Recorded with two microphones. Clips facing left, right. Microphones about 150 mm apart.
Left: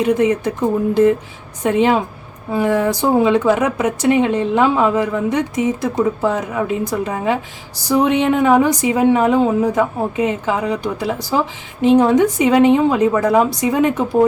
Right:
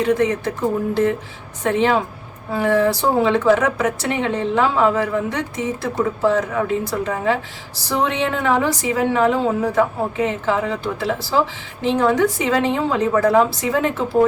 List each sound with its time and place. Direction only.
0.0 s a woman's voice: 15° left (ahead or behind)
1.6 s a woman's voice: 15° left (ahead or behind)